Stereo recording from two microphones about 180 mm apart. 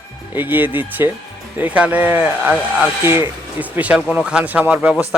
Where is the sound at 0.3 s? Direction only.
10° right (ahead or behind).